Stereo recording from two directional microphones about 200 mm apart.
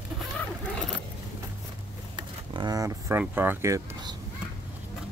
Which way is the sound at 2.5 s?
20° right (ahead or behind).